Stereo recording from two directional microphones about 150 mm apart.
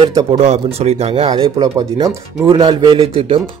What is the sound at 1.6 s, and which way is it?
A man's voice, 25° right (ahead or behind).